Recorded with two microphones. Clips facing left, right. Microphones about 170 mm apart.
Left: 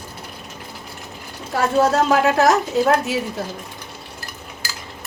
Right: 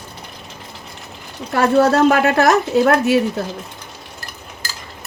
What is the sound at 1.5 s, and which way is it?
Speech, 65° right (ahead or behind).